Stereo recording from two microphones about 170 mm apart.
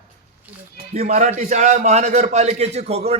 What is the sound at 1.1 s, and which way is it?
A man's voice, 40° right (ahead or behind).